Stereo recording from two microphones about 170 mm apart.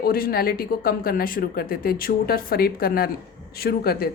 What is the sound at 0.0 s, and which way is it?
Speech, 60° left (ahead or behind).